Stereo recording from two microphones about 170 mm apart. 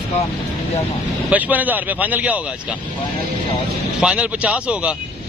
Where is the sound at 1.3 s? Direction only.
10° right (ahead or behind).